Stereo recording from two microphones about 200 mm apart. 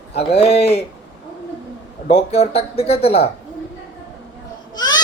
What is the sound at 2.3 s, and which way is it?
Speech, 30° left (ahead or behind).